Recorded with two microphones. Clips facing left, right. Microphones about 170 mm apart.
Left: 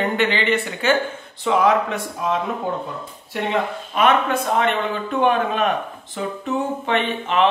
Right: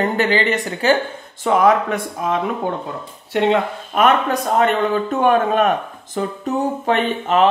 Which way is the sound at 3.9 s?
40° right (ahead or behind).